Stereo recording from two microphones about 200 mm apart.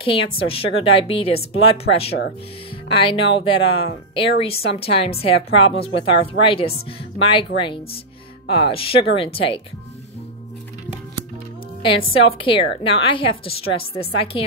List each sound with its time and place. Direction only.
0.0 s a woman's voice: 25° left (ahead or behind)
2.9 s a woman's voice: 25° left (ahead or behind)
11.8 s a woman's voice: 25° left (ahead or behind)